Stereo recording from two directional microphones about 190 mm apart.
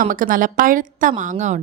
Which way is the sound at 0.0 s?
45° right (ahead or behind).